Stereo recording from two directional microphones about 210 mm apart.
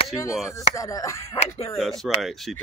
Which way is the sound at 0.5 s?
15° left (ahead or behind).